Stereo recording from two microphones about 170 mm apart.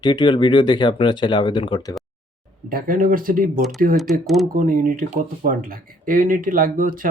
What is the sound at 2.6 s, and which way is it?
Speech, 55° right (ahead or behind).